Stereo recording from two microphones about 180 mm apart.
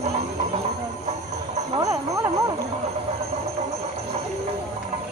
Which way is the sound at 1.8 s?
20° right (ahead or behind).